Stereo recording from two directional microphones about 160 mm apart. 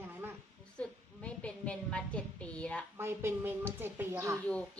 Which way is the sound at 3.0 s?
15° right (ahead or behind).